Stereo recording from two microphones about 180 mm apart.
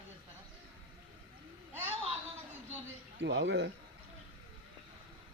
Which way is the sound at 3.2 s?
85° right.